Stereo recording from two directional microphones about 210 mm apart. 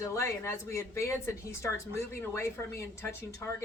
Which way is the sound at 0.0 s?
15° left (ahead or behind).